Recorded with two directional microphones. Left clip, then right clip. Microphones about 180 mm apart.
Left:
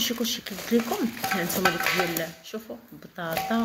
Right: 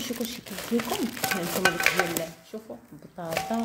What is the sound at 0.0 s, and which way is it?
Speech, 5° right (ahead or behind).